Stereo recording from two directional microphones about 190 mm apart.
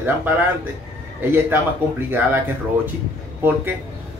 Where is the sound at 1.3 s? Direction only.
10° right (ahead or behind).